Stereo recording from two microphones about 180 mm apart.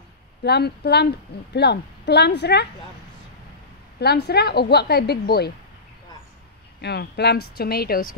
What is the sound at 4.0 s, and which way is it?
Speech, 65° left (ahead or behind).